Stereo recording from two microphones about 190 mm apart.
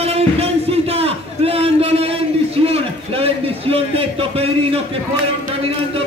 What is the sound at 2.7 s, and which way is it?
A man's voice, 30° right (ahead or behind).